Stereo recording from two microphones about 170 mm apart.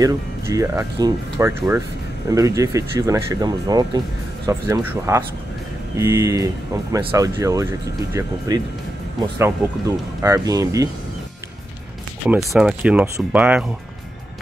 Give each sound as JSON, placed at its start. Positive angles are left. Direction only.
{"t": 0.0, "sound": "speech", "side_deg": -20}
{"t": 10.2, "sound": "speech", "side_deg": -20}
{"t": 12.3, "sound": "speech", "side_deg": -5}